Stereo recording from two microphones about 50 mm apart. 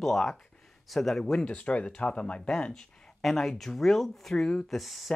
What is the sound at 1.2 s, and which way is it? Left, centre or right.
Speech, centre.